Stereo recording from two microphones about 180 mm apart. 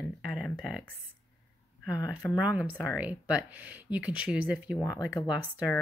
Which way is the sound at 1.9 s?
5° right (ahead or behind).